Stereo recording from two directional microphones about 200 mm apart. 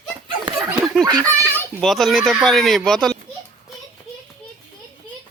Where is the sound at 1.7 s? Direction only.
Centre (ahead or behind).